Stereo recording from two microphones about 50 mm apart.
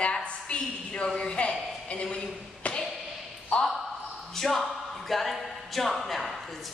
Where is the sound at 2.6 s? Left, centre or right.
Left.